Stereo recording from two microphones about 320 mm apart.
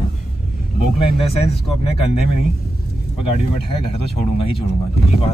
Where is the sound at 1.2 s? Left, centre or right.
Centre.